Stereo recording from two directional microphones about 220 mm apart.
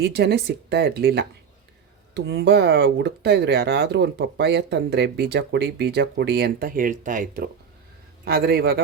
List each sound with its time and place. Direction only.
0.0 s speech: 50° right (ahead or behind)